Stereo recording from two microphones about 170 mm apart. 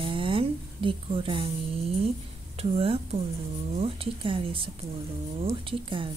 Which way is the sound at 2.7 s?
35° right (ahead or behind).